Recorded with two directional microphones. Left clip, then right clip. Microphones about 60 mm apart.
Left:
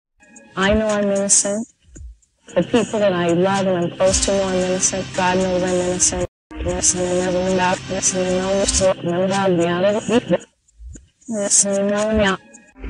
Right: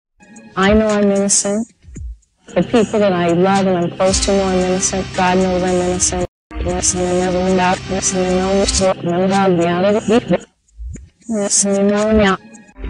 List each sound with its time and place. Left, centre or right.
0.4 s speech: right
6.6 s speech: left